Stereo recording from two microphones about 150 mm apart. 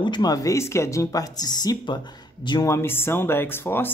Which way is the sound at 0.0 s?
30° left (ahead or behind).